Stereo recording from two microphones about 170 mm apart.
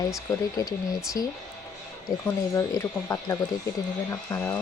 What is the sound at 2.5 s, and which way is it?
Speech, 15° left (ahead or behind).